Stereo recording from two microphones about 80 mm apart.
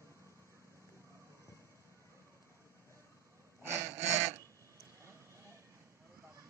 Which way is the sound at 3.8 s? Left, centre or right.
Right.